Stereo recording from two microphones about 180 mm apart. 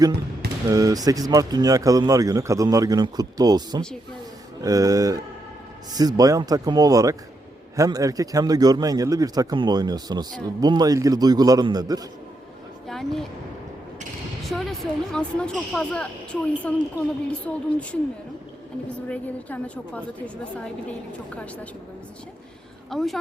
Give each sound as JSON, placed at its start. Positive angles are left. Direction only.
{"t": 0.7, "sound": "speech", "side_deg": -20}
{"t": 12.9, "sound": "a sound", "side_deg": 0}
{"t": 14.5, "sound": "a woman's voice", "side_deg": 0}
{"t": 19.0, "sound": "a woman's voice", "side_deg": 5}
{"t": 22.9, "sound": "speech", "side_deg": 0}